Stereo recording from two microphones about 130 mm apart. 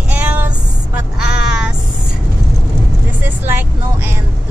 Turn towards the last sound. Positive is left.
turn(degrees=-15)  # may be behind; listen again after turning